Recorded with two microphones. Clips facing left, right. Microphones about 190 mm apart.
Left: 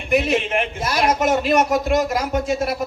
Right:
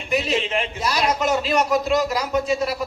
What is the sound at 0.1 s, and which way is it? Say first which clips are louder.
A man's voice: left 4 dB; 55° left (ahead or behind).